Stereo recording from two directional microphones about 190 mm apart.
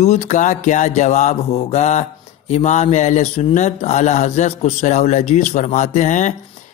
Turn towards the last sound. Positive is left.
turn(degrees=40)  # may be behind; listen again after turning